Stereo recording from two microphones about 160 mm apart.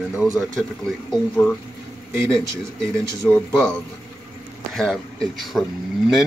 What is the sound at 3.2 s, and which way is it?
A man's voice, 10° left (ahead or behind).